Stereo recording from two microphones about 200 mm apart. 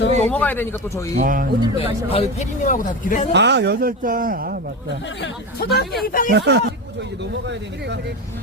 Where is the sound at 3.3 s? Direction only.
60° right (ahead or behind).